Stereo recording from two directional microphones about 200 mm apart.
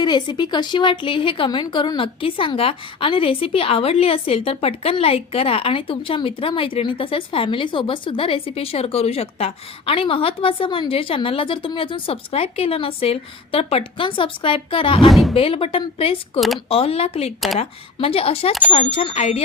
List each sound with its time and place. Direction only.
0.0 s speech: 20° left (ahead or behind)
15.1 s speech: centre (ahead or behind)
15.4 s speech: 25° left (ahead or behind)